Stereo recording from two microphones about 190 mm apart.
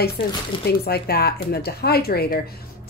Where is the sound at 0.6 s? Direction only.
55° left (ahead or behind).